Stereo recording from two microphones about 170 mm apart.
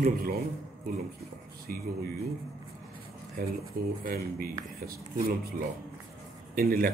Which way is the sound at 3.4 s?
55° right (ahead or behind).